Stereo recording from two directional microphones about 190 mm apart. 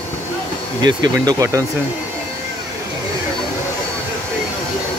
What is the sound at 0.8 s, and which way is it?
Speech, 20° right (ahead or behind).